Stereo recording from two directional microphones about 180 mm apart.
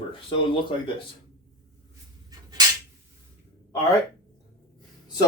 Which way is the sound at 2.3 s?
20° right (ahead or behind).